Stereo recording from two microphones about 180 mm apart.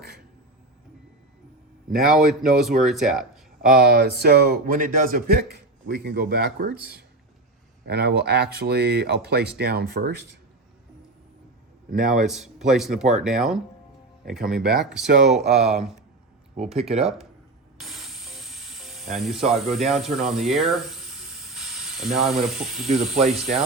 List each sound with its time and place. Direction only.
1.9 s speech: centre (ahead or behind)
3.8 s speech: 60° right (ahead or behind)
11.9 s a man's voice: 50° right (ahead or behind)
12.2 s speech: centre (ahead or behind)
16.9 s speech: 35° right (ahead or behind)
17.7 s speech: centre (ahead or behind)